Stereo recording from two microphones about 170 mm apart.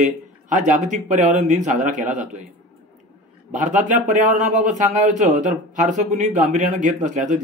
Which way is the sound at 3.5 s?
50° right (ahead or behind).